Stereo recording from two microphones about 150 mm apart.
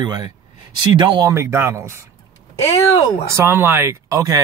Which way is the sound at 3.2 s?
15° right (ahead or behind).